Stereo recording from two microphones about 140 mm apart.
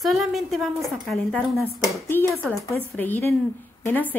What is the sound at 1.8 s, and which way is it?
A woman's voice, 15° left (ahead or behind).